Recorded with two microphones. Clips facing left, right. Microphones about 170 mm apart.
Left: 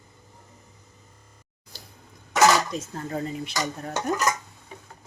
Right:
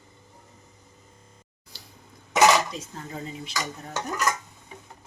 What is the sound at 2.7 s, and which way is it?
Dishes, 55° left (ahead or behind).